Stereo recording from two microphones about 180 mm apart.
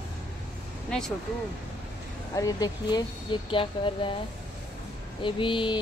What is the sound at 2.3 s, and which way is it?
Speech, 20° left (ahead or behind).